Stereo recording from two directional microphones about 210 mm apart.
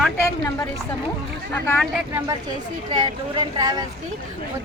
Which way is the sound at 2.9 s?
20° right (ahead or behind).